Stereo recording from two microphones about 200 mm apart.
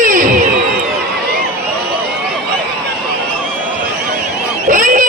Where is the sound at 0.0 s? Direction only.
40° right (ahead or behind).